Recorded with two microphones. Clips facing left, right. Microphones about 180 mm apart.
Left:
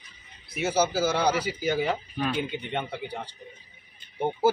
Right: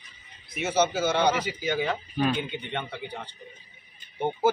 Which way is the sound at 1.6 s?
5° left (ahead or behind).